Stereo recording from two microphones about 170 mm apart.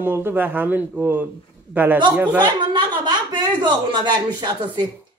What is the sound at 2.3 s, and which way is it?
A woman's voice, 25° right (ahead or behind).